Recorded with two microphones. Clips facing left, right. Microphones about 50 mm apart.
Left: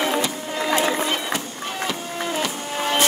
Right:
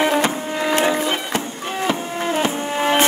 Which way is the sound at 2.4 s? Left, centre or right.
Right.